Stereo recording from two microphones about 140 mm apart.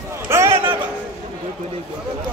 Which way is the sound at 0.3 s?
20° right (ahead or behind).